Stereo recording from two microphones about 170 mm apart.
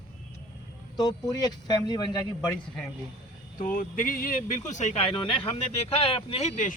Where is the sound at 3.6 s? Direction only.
55° left (ahead or behind).